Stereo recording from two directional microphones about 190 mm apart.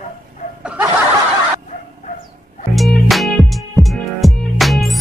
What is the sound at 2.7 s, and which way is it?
Music, centre (ahead or behind).